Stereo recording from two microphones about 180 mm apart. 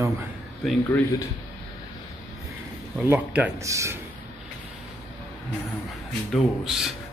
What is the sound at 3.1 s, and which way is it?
Speech, 10° right (ahead or behind).